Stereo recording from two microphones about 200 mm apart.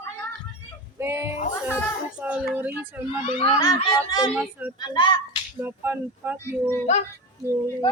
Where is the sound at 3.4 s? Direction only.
20° left (ahead or behind).